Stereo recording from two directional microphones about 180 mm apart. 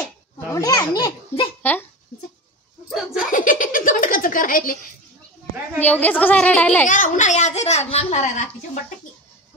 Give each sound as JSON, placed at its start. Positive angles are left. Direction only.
{"t": 0.5, "sound": "a child's voice", "side_deg": 20}
{"t": 1.6, "sound": "a child's voice", "side_deg": 10}
{"t": 3.3, "sound": "a sound", "side_deg": 50}
{"t": 5.8, "sound": "a woman's voice", "side_deg": 10}
{"t": 6.9, "sound": "a child's voice", "side_deg": 45}